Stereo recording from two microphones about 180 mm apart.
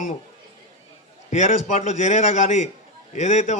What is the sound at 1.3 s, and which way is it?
A man's voice, 40° left (ahead or behind).